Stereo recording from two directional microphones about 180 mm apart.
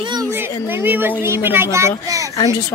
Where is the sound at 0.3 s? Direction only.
15° right (ahead or behind).